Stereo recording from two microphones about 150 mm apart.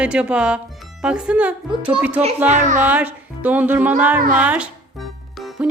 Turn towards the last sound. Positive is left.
turn(degrees=0)  # may be behind; listen again after turning